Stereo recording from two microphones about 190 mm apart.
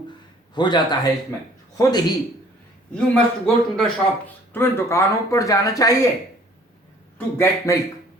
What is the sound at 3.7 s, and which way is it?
Speech, 5° left (ahead or behind).